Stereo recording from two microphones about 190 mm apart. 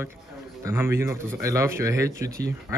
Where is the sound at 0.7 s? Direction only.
15° right (ahead or behind).